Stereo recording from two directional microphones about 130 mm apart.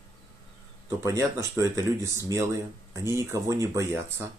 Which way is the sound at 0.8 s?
25° right (ahead or behind).